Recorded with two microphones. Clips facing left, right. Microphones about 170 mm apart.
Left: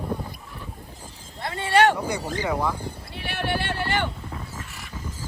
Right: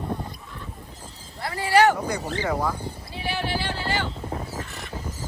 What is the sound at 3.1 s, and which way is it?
Boat, 60° left (ahead or behind).